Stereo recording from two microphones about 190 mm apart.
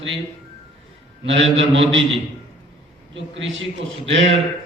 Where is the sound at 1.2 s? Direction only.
75° right (ahead or behind).